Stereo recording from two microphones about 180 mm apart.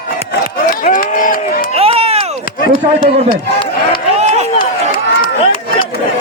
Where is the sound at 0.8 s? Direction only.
50° left (ahead or behind).